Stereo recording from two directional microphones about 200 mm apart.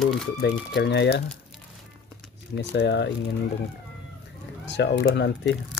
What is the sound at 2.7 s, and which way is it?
Speech, 60° left (ahead or behind).